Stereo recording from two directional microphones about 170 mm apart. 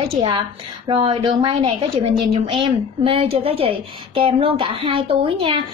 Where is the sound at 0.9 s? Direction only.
30° right (ahead or behind).